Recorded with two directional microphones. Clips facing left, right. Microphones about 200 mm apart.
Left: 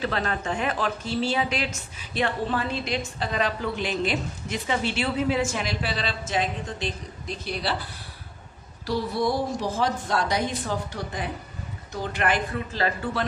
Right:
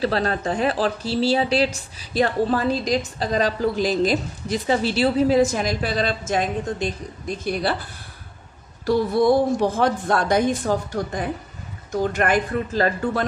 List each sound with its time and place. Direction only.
0.0 s a woman's voice: 35° right (ahead or behind)